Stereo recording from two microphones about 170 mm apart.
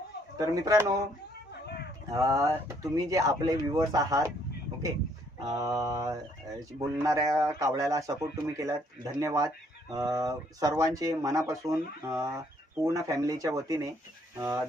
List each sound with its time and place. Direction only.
0.3 s speech: 20° right (ahead or behind)
1.6 s a sound: 70° left (ahead or behind)
2.0 s speech: 20° right (ahead or behind)
5.5 s speech: 20° right (ahead or behind)